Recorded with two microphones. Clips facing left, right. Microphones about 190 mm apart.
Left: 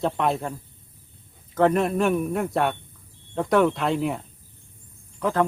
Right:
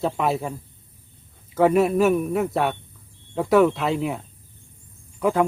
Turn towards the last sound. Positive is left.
turn(degrees=-10)  # may be behind; listen again after turning